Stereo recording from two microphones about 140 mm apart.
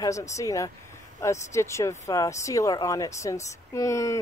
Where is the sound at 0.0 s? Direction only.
20° left (ahead or behind).